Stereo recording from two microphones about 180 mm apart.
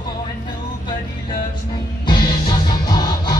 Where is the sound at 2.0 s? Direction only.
25° left (ahead or behind).